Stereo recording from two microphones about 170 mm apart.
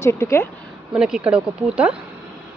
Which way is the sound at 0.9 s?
5° right (ahead or behind).